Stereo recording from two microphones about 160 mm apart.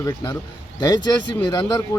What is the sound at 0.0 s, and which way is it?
Speech, 25° left (ahead or behind).